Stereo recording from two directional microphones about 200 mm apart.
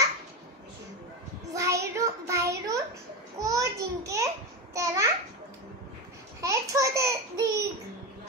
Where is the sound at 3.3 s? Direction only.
15° right (ahead or behind).